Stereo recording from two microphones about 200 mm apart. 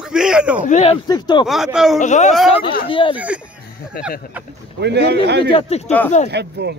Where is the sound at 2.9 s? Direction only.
25° left (ahead or behind).